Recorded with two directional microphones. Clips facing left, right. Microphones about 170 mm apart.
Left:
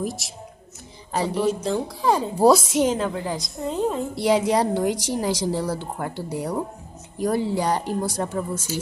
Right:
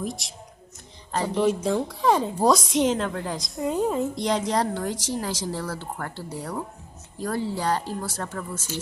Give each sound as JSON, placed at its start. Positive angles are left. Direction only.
{"t": 0.0, "sound": "a woman's voice", "side_deg": 5}
{"t": 4.1, "sound": "a woman's voice", "side_deg": 10}